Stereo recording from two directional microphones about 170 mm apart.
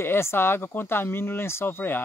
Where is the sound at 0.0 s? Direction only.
15° left (ahead or behind).